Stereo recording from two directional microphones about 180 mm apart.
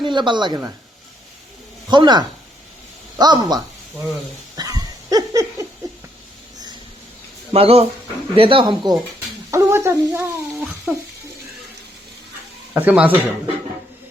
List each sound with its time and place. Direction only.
0.0 s a woman's voice: 25° right (ahead or behind)
1.9 s speech: 25° right (ahead or behind)
4.5 s dog: 20° right (ahead or behind)
7.5 s speech: 35° right (ahead or behind); by 10.2 s 15° right (ahead or behind)
10.2 s a sound: centre (ahead or behind)
12.7 s speech: 10° right (ahead or behind)